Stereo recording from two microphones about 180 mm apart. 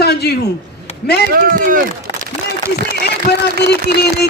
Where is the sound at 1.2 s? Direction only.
50° right (ahead or behind).